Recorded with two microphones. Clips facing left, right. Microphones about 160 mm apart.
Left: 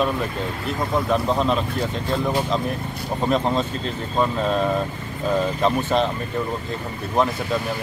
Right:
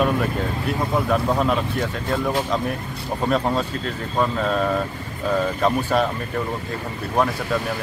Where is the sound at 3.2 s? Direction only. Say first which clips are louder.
Even; centre (ahead or behind).